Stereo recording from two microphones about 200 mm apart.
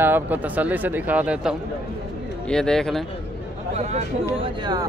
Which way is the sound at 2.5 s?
5° left (ahead or behind).